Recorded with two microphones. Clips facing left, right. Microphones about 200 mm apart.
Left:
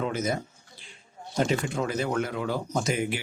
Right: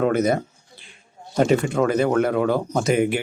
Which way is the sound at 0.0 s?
60° right (ahead or behind).